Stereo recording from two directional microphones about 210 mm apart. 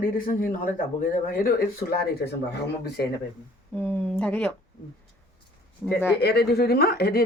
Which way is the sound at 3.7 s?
5° left (ahead or behind).